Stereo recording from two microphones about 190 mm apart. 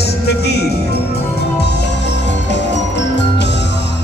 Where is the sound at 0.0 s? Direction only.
60° left (ahead or behind).